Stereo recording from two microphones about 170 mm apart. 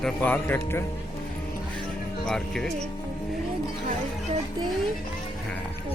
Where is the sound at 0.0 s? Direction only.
10° left (ahead or behind).